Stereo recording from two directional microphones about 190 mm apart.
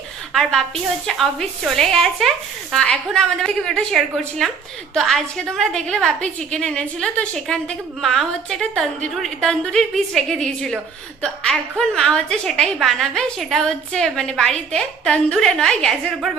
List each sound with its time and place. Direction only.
1.0 s a woman's voice: centre (ahead or behind)